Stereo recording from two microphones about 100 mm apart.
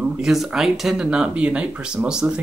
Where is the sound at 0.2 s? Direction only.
5° right (ahead or behind).